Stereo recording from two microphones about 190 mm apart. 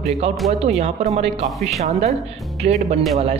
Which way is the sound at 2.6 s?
35° right (ahead or behind).